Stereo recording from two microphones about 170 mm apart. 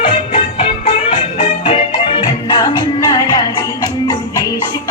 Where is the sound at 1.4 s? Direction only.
35° left (ahead or behind).